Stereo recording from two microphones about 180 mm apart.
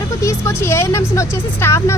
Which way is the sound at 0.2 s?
15° left (ahead or behind).